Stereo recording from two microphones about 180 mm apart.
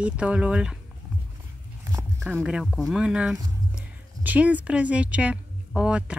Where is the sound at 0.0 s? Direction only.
5° right (ahead or behind).